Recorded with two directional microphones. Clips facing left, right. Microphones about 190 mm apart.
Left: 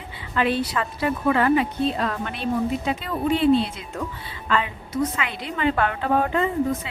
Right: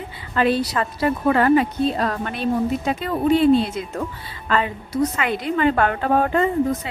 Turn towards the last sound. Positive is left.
turn(degrees=-45)  # may be behind; listen again after turning